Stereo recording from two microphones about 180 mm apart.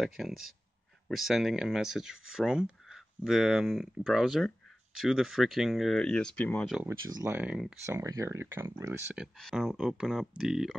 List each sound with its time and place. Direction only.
0.0 s speech: centre (ahead or behind)
6.8 s speech: 20° right (ahead or behind)
7.2 s speech: 10° right (ahead or behind)
7.8 s speech: 15° right (ahead or behind)